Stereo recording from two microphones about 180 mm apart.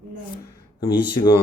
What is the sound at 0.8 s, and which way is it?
Speech, 25° left (ahead or behind).